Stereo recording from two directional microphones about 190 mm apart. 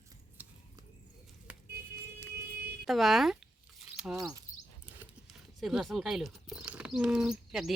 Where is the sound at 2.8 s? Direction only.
Centre (ahead or behind).